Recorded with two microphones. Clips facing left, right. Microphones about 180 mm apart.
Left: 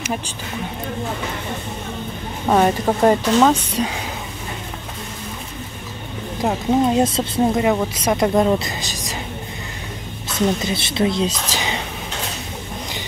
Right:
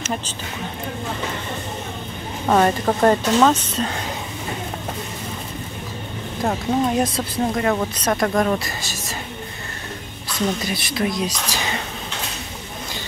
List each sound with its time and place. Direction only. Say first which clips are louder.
2.4 s speech: left 1 dB; 5° left (ahead or behind)
6.4 s speech: left 3 dB; 25° left (ahead or behind)
7.6 s speech: left 2 dB; 10° left (ahead or behind)
10.6 s speech: left 3 dB; 25° left (ahead or behind)